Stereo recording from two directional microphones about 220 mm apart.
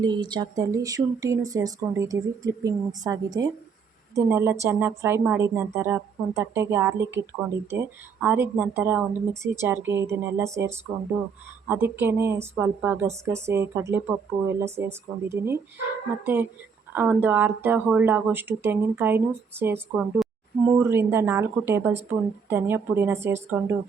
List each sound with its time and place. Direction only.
0.0 s speech: 20° right (ahead or behind)